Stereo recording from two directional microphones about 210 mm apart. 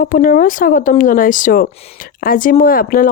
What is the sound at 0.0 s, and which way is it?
Speech, 40° left (ahead or behind).